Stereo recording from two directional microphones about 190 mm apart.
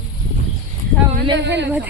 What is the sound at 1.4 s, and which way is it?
Speech, 65° right (ahead or behind).